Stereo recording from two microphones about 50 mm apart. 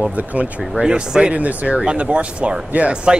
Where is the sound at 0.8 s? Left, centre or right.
Centre.